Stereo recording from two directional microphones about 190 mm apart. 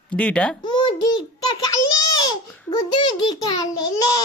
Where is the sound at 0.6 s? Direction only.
25° left (ahead or behind).